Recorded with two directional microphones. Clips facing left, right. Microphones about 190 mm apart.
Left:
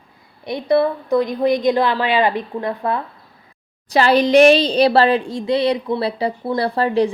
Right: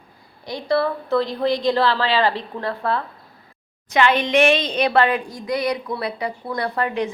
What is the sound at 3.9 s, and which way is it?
A woman's voice, 35° left (ahead or behind).